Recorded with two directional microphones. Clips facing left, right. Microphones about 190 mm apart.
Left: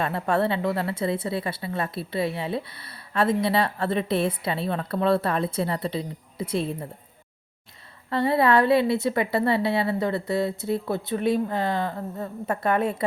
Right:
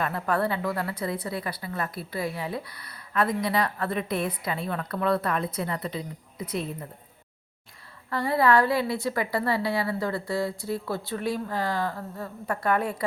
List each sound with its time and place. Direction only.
0.0 s a woman's voice: 25° left (ahead or behind)
8.1 s a woman's voice: 25° left (ahead or behind)